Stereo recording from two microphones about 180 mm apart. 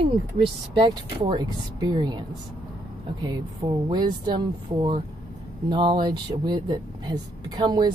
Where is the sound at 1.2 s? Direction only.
25° right (ahead or behind).